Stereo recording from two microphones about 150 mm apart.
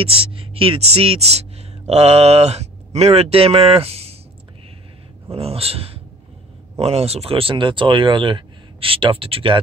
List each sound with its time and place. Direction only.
0.0 s speech: 40° right (ahead or behind)
5.3 s speech: 40° right (ahead or behind)